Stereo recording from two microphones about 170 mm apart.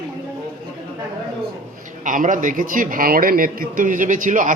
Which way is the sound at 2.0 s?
50° right (ahead or behind).